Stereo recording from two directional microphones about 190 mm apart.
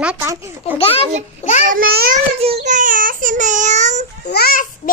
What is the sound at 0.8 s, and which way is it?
Speech, 30° left (ahead or behind).